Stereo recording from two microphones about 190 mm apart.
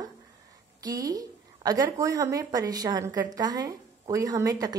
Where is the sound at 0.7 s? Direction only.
20° right (ahead or behind).